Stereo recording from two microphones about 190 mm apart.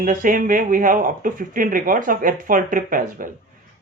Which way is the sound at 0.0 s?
45° right (ahead or behind).